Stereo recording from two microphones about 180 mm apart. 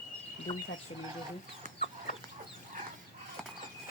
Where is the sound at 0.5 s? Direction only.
30° left (ahead or behind).